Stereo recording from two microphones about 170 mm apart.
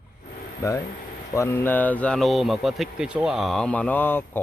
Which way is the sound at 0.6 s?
20° left (ahead or behind).